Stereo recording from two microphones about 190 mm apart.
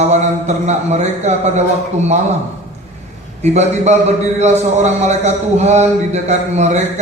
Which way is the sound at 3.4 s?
35° right (ahead or behind).